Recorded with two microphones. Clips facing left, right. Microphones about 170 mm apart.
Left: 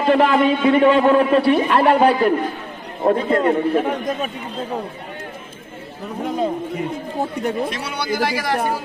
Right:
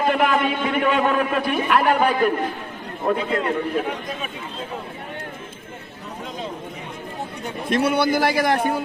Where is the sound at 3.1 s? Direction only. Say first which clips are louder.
Left 5 dB; 45° left (ahead or behind).